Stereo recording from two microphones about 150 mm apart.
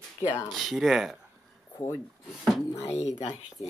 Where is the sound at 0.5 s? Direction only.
Centre (ahead or behind).